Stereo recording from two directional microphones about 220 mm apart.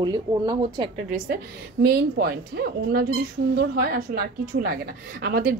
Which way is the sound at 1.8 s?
45° right (ahead or behind).